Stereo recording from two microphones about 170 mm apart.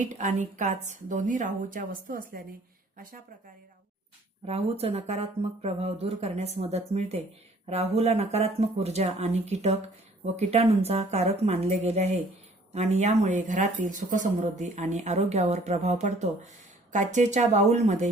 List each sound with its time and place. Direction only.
0.0 s speech: 45° right (ahead or behind)
4.4 s speech: 35° right (ahead or behind)